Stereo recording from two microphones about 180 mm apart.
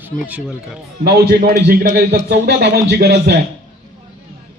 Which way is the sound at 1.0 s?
60° right (ahead or behind).